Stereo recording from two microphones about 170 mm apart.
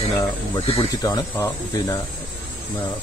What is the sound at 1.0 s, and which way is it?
Speech, 20° left (ahead or behind).